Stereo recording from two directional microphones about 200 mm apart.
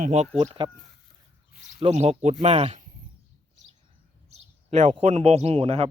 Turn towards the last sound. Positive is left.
turn(degrees=-30)  # may be behind; listen again after turning